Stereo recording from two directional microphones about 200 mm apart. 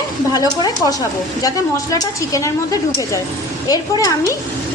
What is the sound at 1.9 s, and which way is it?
A woman's voice, 15° left (ahead or behind).